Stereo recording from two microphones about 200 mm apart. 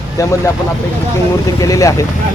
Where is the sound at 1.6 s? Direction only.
15° left (ahead or behind).